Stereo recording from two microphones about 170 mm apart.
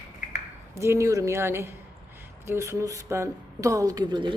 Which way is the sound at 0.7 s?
15° right (ahead or behind).